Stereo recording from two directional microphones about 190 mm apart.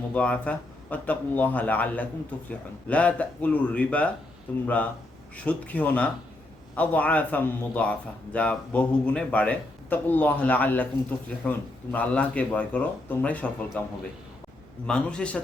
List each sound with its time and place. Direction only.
0.1 s speech: 5° left (ahead or behind)
14.8 s a man's voice: 5° left (ahead or behind)